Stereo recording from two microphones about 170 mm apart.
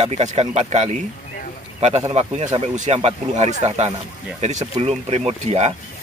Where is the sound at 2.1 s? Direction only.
40° right (ahead or behind).